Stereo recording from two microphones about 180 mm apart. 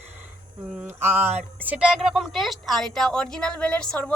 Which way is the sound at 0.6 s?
5° right (ahead or behind).